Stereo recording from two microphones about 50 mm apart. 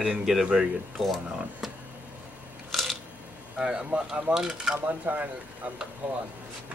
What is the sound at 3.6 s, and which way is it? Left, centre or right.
Speech, centre.